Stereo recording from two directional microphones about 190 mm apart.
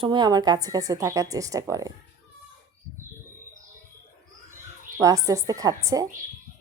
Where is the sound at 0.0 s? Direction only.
25° right (ahead or behind).